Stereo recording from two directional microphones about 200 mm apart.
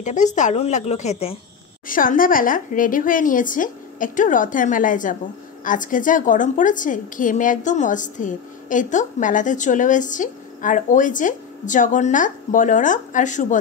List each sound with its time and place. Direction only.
0.0 s a woman's voice: 35° left (ahead or behind)
1.9 s a woman's voice: 45° left (ahead or behind)